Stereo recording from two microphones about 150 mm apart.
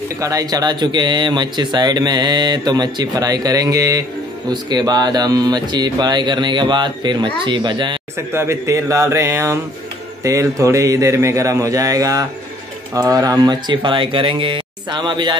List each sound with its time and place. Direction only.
0.2 s speech: 20° right (ahead or behind)
8.3 s speech: 20° right (ahead or behind)